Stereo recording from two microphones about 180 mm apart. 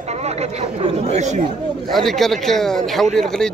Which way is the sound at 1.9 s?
Centre (ahead or behind).